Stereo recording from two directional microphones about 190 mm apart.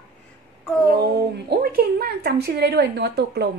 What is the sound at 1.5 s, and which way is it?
A woman's voice, 50° right (ahead or behind).